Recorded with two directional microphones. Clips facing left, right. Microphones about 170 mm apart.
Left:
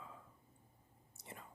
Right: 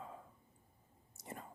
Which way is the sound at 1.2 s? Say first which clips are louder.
Right 5 dB; 45° right (ahead or behind).